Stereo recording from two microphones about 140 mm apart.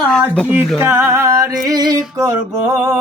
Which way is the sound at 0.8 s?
15° right (ahead or behind).